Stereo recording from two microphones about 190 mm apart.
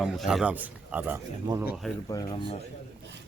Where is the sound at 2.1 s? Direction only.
25° left (ahead or behind).